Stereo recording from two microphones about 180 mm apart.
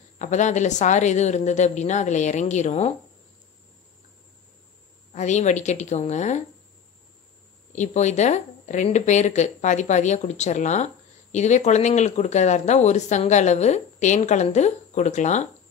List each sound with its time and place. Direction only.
0.2 s speech: 40° left (ahead or behind)
5.1 s speech: 40° left (ahead or behind)
7.7 s speech: 40° left (ahead or behind)